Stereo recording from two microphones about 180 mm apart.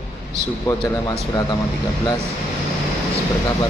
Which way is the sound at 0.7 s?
15° left (ahead or behind).